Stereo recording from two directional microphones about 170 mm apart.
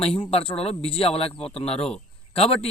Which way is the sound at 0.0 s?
35° left (ahead or behind).